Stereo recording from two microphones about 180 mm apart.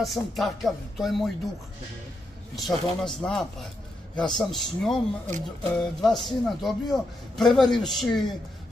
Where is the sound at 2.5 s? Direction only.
Centre (ahead or behind).